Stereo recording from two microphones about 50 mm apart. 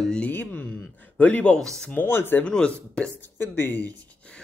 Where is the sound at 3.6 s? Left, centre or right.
Left.